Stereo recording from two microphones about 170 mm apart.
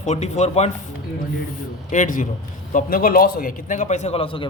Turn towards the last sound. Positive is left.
turn(degrees=30)  # may be behind; listen again after turning